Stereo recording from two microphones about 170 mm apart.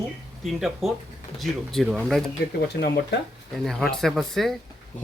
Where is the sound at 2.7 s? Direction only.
70° left (ahead or behind).